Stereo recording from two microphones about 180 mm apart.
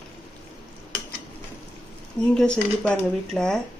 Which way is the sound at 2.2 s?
5° left (ahead or behind).